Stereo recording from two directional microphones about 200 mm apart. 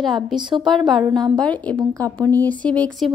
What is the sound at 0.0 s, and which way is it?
Speech, centre (ahead or behind).